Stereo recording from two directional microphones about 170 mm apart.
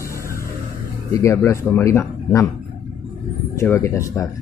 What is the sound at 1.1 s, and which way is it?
Speech, 15° left (ahead or behind).